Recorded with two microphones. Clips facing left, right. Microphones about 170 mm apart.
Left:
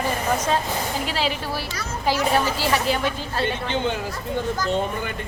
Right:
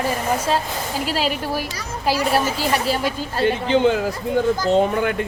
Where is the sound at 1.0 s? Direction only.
40° right (ahead or behind).